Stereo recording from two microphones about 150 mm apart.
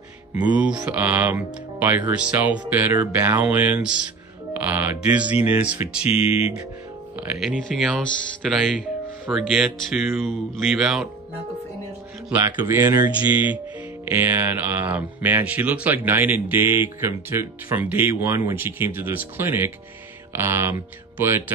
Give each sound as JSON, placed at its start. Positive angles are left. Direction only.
{"t": 0.4, "sound": "speech", "side_deg": -10}
{"t": 6.0, "sound": "speech", "side_deg": 40}
{"t": 7.2, "sound": "speech", "side_deg": 0}
{"t": 12.3, "sound": "speech", "side_deg": -10}